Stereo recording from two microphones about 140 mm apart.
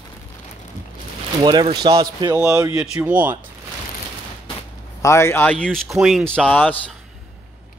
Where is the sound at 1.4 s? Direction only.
30° right (ahead or behind).